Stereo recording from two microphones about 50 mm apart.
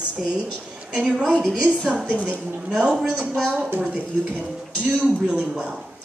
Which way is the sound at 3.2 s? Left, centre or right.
Right.